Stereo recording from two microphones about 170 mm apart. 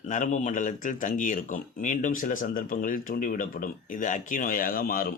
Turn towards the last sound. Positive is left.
turn(degrees=60)  # may be behind; listen again after turning